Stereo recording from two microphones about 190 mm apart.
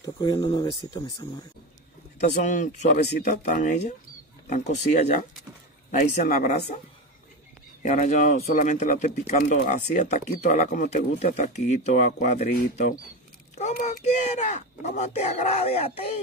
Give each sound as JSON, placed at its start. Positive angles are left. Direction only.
{"t": 0.0, "sound": "speech", "side_deg": 25}
{"t": 2.1, "sound": "speech", "side_deg": 45}
{"t": 7.8, "sound": "speech", "side_deg": 40}
{"t": 13.6, "sound": "speech", "side_deg": 35}